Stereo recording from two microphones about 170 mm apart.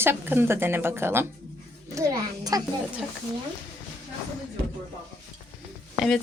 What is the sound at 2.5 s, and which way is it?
Speech, 20° right (ahead or behind).